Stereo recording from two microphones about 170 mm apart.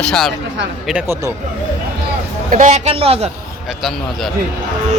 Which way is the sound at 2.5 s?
45° right (ahead or behind).